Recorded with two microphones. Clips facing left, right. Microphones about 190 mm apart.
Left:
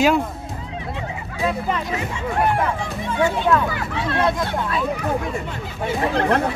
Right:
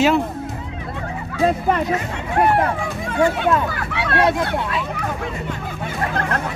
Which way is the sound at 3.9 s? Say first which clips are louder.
Right 4 dB; 65° right (ahead or behind).